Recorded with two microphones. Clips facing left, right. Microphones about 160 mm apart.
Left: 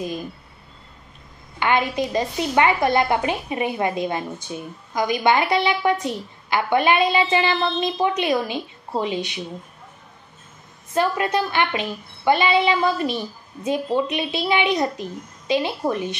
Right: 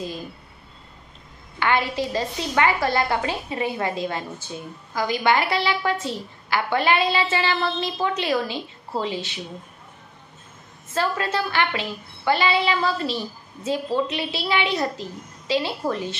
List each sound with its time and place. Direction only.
1.6 s a woman's voice: 20° left (ahead or behind)
10.9 s a woman's voice: 15° left (ahead or behind)